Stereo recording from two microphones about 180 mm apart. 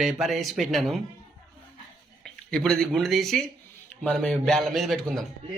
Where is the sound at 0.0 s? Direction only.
Centre (ahead or behind).